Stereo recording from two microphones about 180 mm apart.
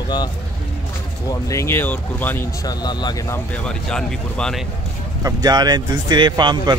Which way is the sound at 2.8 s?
20° left (ahead or behind).